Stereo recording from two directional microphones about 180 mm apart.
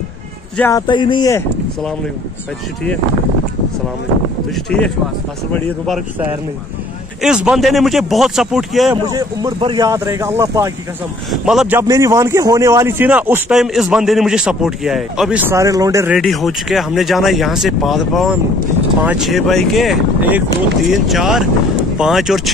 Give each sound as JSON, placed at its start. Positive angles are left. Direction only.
{"t": 0.6, "sound": "a sound", "side_deg": 15}
{"t": 0.8, "sound": "speech", "side_deg": 25}
{"t": 4.6, "sound": "a man's voice", "side_deg": 5}
{"t": 7.2, "sound": "a man's voice", "side_deg": -5}
{"t": 8.9, "sound": "a man's voice", "side_deg": -25}
{"t": 11.2, "sound": "a man's voice", "side_deg": -5}
{"t": 11.9, "sound": "a man's voice", "side_deg": -15}
{"t": 15.5, "sound": "a man's voice", "side_deg": -20}
{"t": 16.1, "sound": "a man's voice", "side_deg": 0}